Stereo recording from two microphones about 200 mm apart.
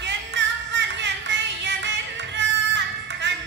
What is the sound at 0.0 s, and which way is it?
Music, 60° right (ahead or behind).